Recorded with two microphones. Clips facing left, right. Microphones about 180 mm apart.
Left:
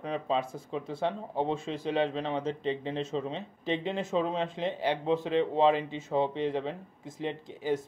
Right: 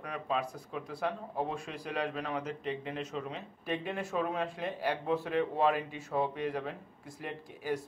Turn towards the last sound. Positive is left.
turn(degrees=20)  # may be behind; listen again after turning